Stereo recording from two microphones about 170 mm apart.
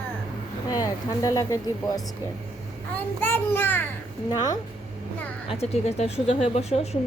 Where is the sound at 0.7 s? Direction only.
20° left (ahead or behind).